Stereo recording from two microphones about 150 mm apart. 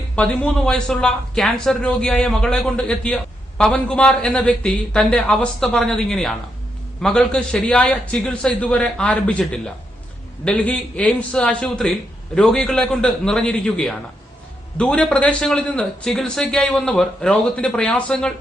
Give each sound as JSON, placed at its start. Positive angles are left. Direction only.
{"t": 0.2, "sound": "a man's voice", "side_deg": 5}